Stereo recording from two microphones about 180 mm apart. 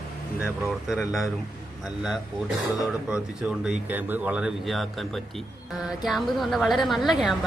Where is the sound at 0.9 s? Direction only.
Centre (ahead or behind).